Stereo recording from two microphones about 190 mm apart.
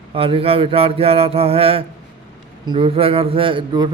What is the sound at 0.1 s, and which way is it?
Speech, 30° right (ahead or behind).